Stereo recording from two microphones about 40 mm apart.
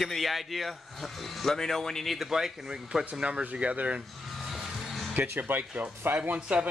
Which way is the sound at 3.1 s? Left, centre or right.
Right.